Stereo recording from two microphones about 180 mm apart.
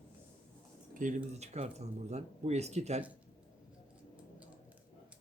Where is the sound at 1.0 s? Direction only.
45° right (ahead or behind).